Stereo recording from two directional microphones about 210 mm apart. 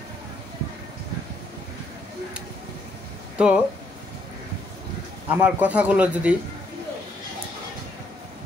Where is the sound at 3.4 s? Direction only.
5° right (ahead or behind).